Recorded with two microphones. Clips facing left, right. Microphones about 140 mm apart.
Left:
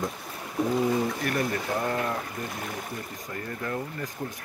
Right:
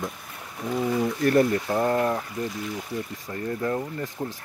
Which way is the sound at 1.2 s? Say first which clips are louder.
Right 7 dB; 30° right (ahead or behind).